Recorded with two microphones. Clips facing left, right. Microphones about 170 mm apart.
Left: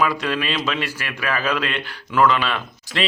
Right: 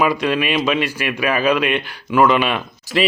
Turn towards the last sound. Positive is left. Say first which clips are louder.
# right 7 dB
turn(degrees=-5)  # may be behind; listen again after turning